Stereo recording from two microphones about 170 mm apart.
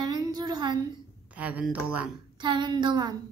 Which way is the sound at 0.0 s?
25° right (ahead or behind).